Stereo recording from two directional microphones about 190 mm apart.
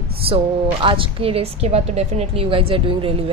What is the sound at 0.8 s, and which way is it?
Speech, 25° right (ahead or behind).